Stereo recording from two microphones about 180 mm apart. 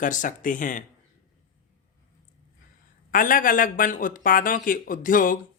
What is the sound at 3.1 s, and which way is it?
Speech, 50° left (ahead or behind).